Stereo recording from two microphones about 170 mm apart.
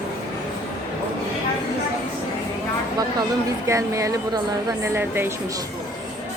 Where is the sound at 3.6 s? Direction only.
15° right (ahead or behind).